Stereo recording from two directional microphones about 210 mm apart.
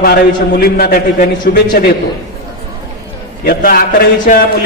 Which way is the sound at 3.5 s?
45° left (ahead or behind).